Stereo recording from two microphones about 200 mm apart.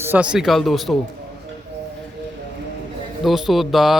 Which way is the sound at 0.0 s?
10° right (ahead or behind).